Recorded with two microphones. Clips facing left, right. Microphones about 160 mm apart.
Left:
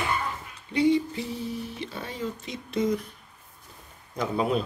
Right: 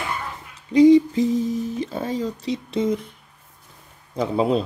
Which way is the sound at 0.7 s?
35° right (ahead or behind).